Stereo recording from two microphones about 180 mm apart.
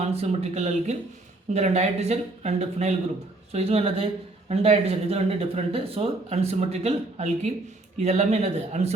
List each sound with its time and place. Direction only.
0.0 s speech: 35° right (ahead or behind)